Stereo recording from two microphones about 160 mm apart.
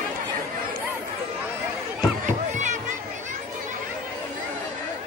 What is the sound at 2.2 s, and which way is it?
Music, 50° right (ahead or behind).